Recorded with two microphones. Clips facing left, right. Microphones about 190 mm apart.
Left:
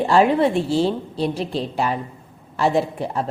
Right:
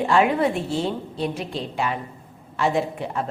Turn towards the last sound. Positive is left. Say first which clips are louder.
# left 3 dB
turn(degrees=35)  # may be behind; listen again after turning